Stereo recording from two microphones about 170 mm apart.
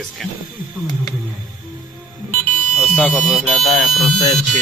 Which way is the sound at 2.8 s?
10° left (ahead or behind).